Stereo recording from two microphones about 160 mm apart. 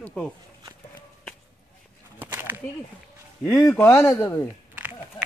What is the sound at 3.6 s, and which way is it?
Speech, 15° left (ahead or behind).